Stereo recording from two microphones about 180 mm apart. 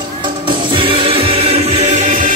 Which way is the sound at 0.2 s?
25° right (ahead or behind).